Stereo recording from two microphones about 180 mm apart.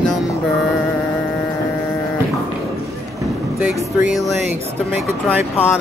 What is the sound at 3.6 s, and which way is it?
Speech, 5° right (ahead or behind).